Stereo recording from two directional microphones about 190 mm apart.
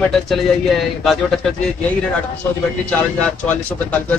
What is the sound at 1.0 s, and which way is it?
Speech, centre (ahead or behind).